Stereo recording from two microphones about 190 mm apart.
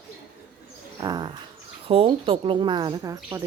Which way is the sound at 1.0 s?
20° right (ahead or behind).